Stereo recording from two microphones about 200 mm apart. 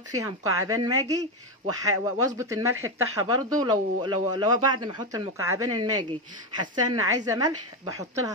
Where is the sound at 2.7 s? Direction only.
90° right.